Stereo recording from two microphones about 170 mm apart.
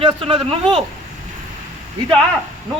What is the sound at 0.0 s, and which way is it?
Speech, 35° right (ahead or behind).